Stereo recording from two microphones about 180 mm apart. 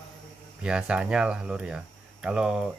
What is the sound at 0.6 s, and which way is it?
Speech, 5° right (ahead or behind).